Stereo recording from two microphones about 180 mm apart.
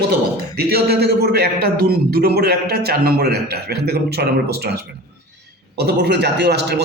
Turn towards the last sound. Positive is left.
turn(degrees=-70)  # may be behind; listen again after turning